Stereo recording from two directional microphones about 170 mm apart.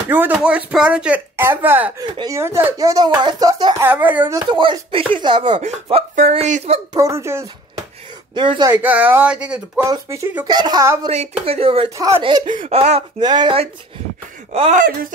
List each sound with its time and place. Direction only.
0.1 s speech: 10° right (ahead or behind)
3.8 s speech: 10° right (ahead or behind)
4.5 s speech: 25° right (ahead or behind)
6.9 s speech: 15° right (ahead or behind)
8.4 s speech: 25° right (ahead or behind)
8.7 s speech: 10° right (ahead or behind)
9.8 s speech: 15° right (ahead or behind)
11.1 s speech: 40° right (ahead or behind)
12.6 s speech: 40° right (ahead or behind)
13.2 s speech: 25° right (ahead or behind)